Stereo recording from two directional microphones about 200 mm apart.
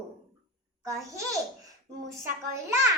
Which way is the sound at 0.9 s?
15° right (ahead or behind).